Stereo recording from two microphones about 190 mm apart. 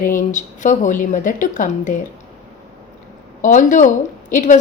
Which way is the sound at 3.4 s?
40° left (ahead or behind).